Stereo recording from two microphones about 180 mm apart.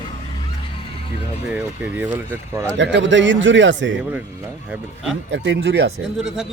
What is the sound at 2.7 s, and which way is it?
A man's voice, 85° right.